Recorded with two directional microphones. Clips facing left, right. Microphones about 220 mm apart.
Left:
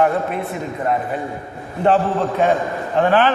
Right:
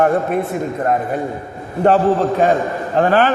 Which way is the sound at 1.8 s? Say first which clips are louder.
Right 3 dB; 40° right (ahead or behind).